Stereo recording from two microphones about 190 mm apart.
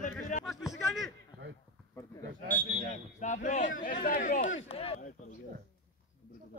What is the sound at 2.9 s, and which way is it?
Speech, 40° left (ahead or behind).